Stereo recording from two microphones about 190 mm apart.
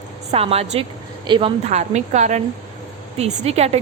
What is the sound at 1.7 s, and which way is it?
A woman's voice, 35° right (ahead or behind).